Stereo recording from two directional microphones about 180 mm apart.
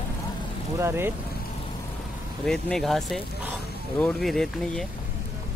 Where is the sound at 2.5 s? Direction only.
5° left (ahead or behind).